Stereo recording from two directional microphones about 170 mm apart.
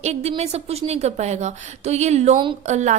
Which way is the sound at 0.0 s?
40° right (ahead or behind).